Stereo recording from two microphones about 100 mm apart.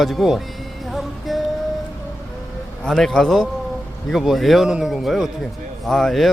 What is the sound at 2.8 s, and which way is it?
Speech, 5° left (ahead or behind).